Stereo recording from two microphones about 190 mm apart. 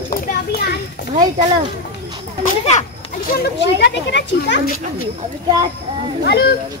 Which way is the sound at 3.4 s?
65° left (ahead or behind).